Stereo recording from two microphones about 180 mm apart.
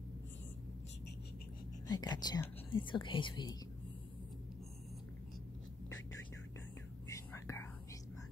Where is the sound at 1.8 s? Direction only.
20° left (ahead or behind).